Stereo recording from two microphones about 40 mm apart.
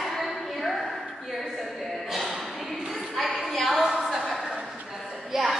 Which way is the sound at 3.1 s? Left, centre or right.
Centre.